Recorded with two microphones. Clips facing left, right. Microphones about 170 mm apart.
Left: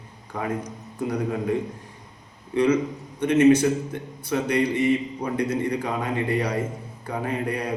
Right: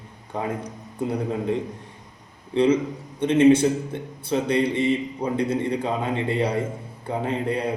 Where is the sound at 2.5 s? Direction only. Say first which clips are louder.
Right 1 dB; 30° right (ahead or behind).